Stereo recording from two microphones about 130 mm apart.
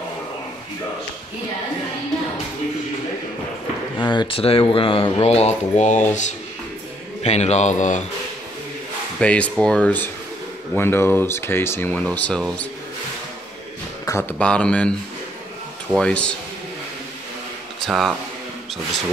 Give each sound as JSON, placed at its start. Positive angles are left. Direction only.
{"t": 4.0, "sound": "a man's voice", "side_deg": 35}
{"t": 9.2, "sound": "speech", "side_deg": 10}
{"t": 14.0, "sound": "a sound", "side_deg": 20}
{"t": 14.4, "sound": "speech", "side_deg": 10}
{"t": 16.0, "sound": "speech", "side_deg": 10}
{"t": 17.8, "sound": "speech", "side_deg": 0}